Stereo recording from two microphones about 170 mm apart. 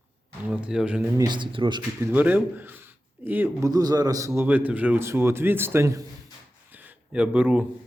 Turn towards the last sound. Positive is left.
turn(degrees=-10)  # may be behind; listen again after turning